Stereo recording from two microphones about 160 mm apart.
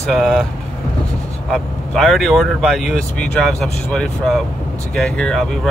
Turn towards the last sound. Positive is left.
turn(degrees=0)  # may be behind; listen again after turning